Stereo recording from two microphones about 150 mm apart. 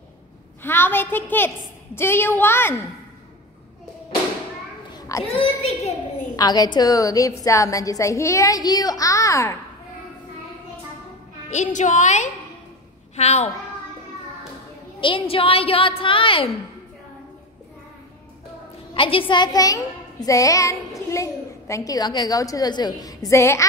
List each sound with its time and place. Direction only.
0.6 s a woman's voice: 15° left (ahead or behind)
4.9 s children playing: 20° left (ahead or behind)
5.3 s a woman's voice: 40° left (ahead or behind)
6.3 s a woman's voice: 25° left (ahead or behind)
11.5 s a woman's voice: 55° left (ahead or behind)
15.0 s a woman's voice: 35° left (ahead or behind)
18.9 s a woman's voice: 35° left (ahead or behind); by 23.6 s 20° left (ahead or behind)